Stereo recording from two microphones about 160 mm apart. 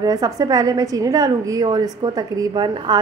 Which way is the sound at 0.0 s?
20° right (ahead or behind).